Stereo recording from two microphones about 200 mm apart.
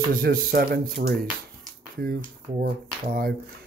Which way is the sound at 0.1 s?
45° right (ahead or behind).